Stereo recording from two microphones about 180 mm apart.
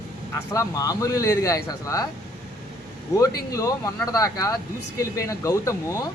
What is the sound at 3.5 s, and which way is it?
Speech, 20° left (ahead or behind).